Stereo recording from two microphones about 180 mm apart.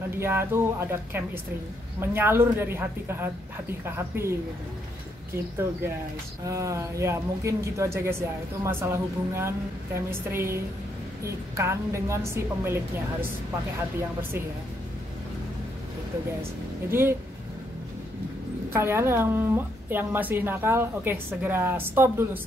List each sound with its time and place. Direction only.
0.2 s a woman's voice: 15° right (ahead or behind)
6.4 s a woman's voice: 15° right (ahead or behind)
16.9 s a woman's voice: 15° right (ahead or behind)
18.7 s a woman's voice: 15° right (ahead or behind)